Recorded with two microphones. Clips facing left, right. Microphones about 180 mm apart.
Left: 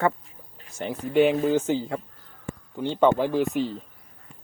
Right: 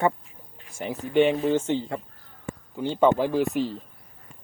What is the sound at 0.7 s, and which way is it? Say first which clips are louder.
Speech: even; centre (ahead or behind).